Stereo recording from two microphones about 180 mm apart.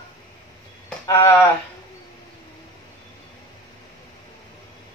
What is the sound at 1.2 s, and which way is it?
Speech, 15° left (ahead or behind).